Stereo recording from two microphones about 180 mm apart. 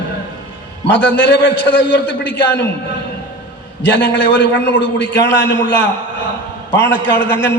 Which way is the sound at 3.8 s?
75° left (ahead or behind).